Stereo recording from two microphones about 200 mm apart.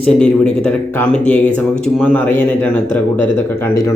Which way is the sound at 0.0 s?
5° left (ahead or behind).